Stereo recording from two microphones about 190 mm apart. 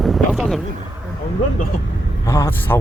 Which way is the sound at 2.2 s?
15° left (ahead or behind).